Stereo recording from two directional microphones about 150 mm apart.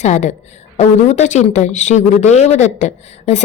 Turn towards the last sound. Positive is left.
turn(degrees=50)  # may be behind; listen again after turning